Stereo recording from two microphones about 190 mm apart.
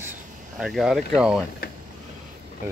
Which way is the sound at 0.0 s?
5° right (ahead or behind).